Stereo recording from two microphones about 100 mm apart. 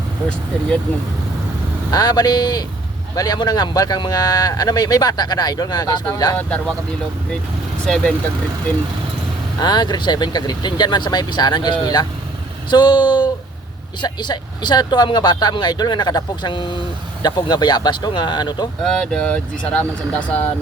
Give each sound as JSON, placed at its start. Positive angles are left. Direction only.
{"t": 1.9, "sound": "speech", "side_deg": 40}
{"t": 6.3, "sound": "speech", "side_deg": 10}
{"t": 7.9, "sound": "speech", "side_deg": 5}
{"t": 9.6, "sound": "speech", "side_deg": 45}
{"t": 18.9, "sound": "speech", "side_deg": 10}